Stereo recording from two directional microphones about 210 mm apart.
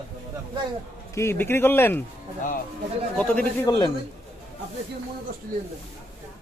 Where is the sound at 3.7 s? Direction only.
15° left (ahead or behind).